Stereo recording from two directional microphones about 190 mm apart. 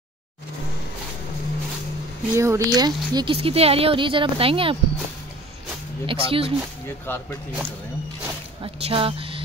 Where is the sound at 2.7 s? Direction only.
20° right (ahead or behind).